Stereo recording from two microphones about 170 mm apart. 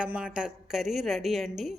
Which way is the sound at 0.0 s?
5° right (ahead or behind).